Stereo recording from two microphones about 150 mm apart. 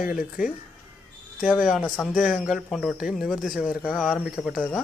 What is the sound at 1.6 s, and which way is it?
Speech, centre (ahead or behind).